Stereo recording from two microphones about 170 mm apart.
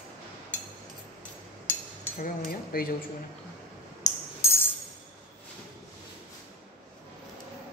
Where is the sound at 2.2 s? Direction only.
60° left (ahead or behind).